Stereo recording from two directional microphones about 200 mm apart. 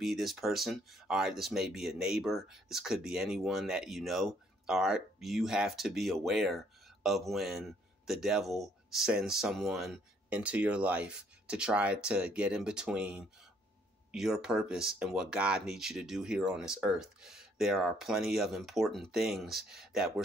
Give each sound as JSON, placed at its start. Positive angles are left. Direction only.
{"t": 0.0, "sound": "speech", "side_deg": 0}